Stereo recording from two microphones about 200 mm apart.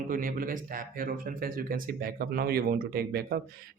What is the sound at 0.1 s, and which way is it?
Speech, 45° right (ahead or behind).